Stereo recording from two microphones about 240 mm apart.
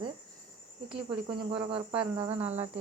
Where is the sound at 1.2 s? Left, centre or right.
Centre.